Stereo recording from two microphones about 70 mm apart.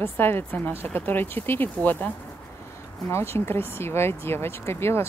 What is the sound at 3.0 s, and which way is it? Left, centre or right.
Speech, left.